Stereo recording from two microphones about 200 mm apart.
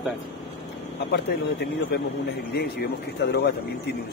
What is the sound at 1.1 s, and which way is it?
Speech, 55° left (ahead or behind).